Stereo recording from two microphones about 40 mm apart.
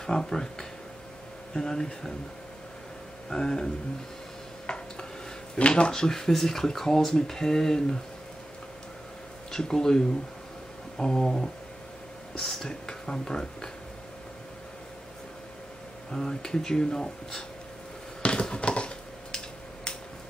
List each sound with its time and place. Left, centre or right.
0.0 s speech: centre
3.3 s speech: centre
4.6 s a sound: left
5.6 s speech: left
5.9 s speech: centre
9.5 s speech: centre
16.1 s speech: centre
18.2 s a sound: left